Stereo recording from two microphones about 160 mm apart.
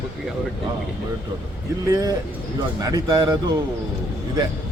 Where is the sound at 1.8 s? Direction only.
20° right (ahead or behind).